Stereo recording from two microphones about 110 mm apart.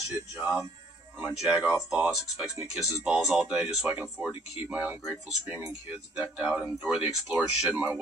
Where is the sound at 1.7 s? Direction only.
15° right (ahead or behind).